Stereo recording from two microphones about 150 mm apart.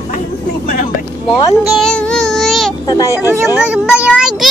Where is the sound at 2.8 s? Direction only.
20° left (ahead or behind).